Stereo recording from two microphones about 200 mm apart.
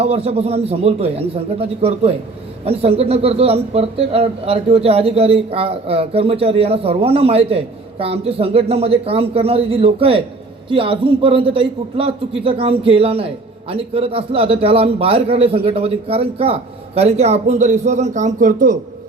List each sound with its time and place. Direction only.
0.0 s a man's voice: 30° right (ahead or behind)